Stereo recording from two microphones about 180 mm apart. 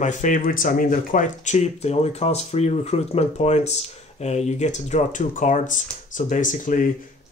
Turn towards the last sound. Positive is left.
turn(degrees=45)  # may be behind; listen again after turning